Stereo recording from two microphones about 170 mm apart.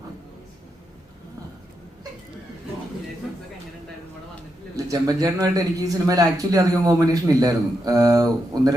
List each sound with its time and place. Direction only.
4.9 s speech: 20° right (ahead or behind)